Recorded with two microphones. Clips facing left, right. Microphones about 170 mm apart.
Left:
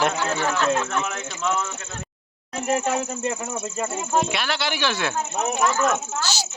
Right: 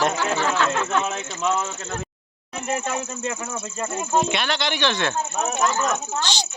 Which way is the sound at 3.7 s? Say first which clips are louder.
Right 1 dB; 5° left (ahead or behind).